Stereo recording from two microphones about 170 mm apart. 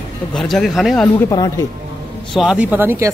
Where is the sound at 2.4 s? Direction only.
5° right (ahead or behind).